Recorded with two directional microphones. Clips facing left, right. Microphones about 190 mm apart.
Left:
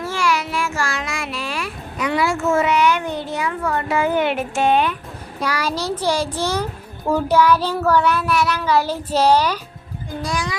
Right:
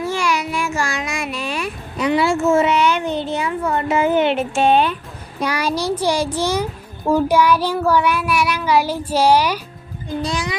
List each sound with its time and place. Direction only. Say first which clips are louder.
0.0 s a sound: right 1 dB; 15° right (ahead or behind)
5.4 s child singing: right 2 dB; 20° right (ahead or behind)
10.2 s a child's voice: left 1 dB; 25° right (ahead or behind)